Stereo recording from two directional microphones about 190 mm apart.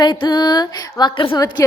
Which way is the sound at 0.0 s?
20° left (ahead or behind).